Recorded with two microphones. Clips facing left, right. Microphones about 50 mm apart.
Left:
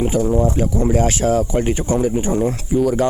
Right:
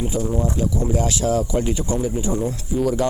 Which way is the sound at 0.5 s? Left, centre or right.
Left.